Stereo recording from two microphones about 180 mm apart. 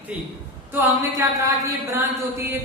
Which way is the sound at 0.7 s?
15° right (ahead or behind).